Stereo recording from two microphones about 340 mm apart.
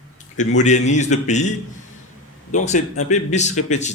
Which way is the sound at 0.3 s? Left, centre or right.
Left.